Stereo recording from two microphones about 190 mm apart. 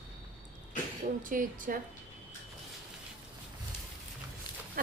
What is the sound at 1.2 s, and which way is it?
Speech, 45° right (ahead or behind).